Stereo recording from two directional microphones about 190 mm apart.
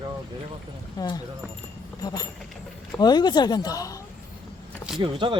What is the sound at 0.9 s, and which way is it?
Speech, 20° left (ahead or behind).